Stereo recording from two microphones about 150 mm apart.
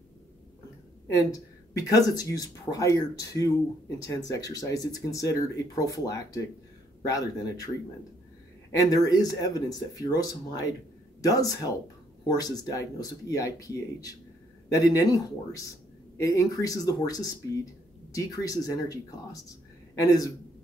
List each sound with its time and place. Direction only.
1.0 s speech: 20° left (ahead or behind)
8.7 s speech: 25° left (ahead or behind)